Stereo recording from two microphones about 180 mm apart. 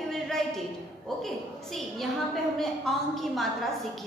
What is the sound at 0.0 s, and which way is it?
A woman's voice, centre (ahead or behind).